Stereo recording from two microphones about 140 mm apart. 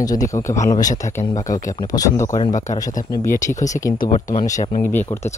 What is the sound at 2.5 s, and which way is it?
A man's voice, 60° left (ahead or behind).